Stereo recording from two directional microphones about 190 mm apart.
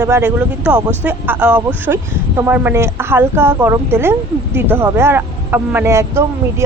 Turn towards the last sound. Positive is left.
turn(degrees=-15)  # may be behind; listen again after turning